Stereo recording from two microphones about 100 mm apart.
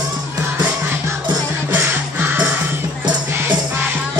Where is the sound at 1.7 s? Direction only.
15° right (ahead or behind).